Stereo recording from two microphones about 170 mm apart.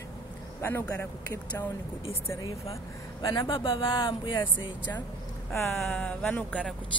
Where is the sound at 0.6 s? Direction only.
15° left (ahead or behind).